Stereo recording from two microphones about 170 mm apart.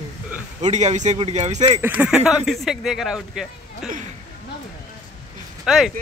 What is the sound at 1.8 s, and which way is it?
Speech, 10° right (ahead or behind).